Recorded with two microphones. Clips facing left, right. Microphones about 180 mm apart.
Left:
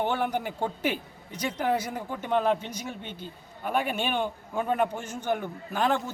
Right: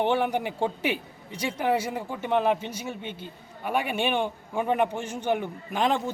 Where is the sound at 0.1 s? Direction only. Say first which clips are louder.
Right 3 dB; 10° right (ahead or behind).